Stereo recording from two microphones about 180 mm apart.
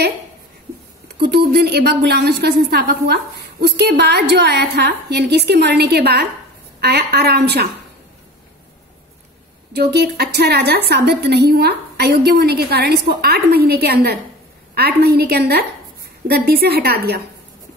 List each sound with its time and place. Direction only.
1.3 s a woman's voice: 60° right (ahead or behind)
9.7 s a woman's voice: 65° right (ahead or behind)